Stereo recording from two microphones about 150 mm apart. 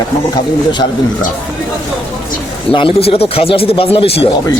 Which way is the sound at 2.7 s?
35° left (ahead or behind).